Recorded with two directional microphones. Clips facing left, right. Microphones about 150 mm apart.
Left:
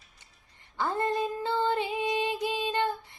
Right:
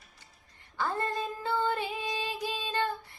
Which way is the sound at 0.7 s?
20° left (ahead or behind).